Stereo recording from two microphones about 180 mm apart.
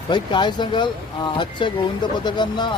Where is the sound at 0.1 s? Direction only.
25° left (ahead or behind).